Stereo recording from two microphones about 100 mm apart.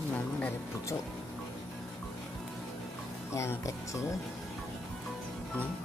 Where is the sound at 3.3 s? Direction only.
30° left (ahead or behind).